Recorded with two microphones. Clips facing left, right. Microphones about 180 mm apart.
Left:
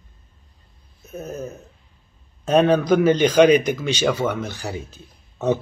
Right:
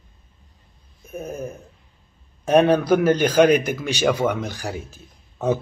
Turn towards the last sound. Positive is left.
turn(degrees=-10)  # may be behind; listen again after turning